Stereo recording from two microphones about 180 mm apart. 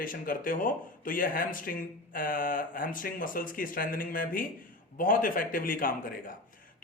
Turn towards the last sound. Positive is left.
turn(degrees=50)  # may be behind; listen again after turning